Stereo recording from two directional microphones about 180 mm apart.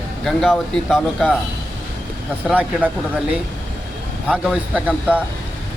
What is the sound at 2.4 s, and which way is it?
Speech, 10° right (ahead or behind).